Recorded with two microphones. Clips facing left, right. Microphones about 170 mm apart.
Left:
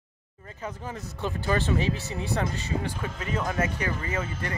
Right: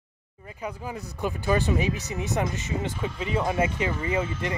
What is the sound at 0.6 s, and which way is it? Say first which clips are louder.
Speech: right 2 dB; 10° right (ahead or behind).